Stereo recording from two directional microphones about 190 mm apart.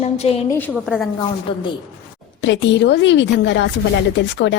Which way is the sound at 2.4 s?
70° left (ahead or behind).